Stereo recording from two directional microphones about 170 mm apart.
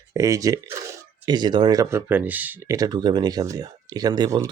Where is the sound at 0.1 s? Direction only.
20° right (ahead or behind).